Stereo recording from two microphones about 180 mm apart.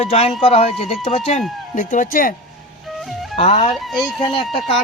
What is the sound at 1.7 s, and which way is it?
Speech, 50° left (ahead or behind).